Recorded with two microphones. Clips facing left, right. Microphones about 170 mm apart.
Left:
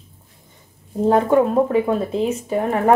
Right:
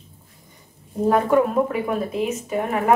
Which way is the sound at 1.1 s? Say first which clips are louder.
Left 3 dB; 25° left (ahead or behind).